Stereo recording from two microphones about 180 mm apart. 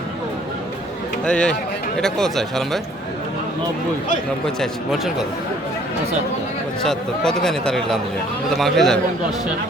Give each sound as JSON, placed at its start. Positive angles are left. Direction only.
{"t": 1.2, "sound": "speech", "side_deg": 5}
{"t": 4.6, "sound": "speech", "side_deg": 0}
{"t": 6.8, "sound": "speech", "side_deg": 5}